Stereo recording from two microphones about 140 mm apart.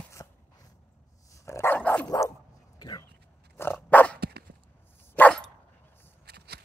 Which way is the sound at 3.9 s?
10° left (ahead or behind).